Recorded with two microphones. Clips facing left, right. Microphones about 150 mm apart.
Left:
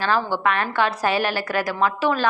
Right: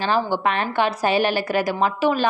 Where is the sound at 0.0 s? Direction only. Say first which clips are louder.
Right 1 dB; 20° right (ahead or behind).